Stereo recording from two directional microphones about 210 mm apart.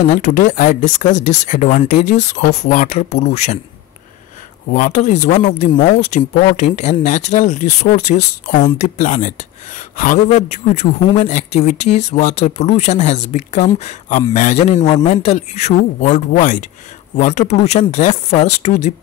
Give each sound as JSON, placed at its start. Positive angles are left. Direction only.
{"t": 0.0, "sound": "speech", "side_deg": 35}
{"t": 4.6, "sound": "speech", "side_deg": 40}